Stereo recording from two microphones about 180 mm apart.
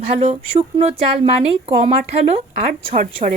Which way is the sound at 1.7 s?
40° right (ahead or behind).